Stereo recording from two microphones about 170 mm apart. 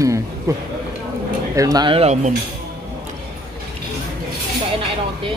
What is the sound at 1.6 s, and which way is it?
Speech, 20° right (ahead or behind).